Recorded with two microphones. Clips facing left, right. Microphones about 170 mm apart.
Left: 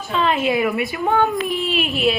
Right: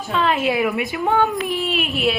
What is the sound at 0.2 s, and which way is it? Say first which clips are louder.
Speech: left 1 dB; 5° right (ahead or behind).